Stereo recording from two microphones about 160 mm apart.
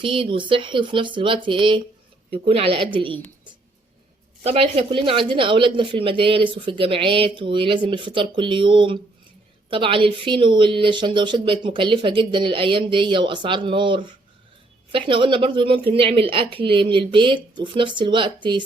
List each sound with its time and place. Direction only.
0.0 s speech: 35° right (ahead or behind)
4.4 s speech: 40° right (ahead or behind)